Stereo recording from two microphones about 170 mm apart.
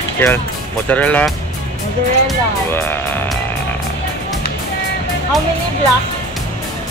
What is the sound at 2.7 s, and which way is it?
Speech, 15° left (ahead or behind).